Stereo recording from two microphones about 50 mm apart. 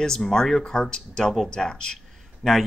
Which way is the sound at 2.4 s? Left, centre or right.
Centre.